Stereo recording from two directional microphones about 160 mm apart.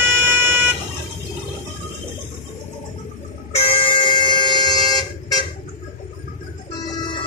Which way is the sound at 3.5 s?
40° left (ahead or behind).